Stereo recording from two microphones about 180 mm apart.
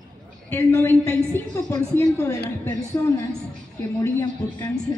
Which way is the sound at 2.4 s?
15° left (ahead or behind).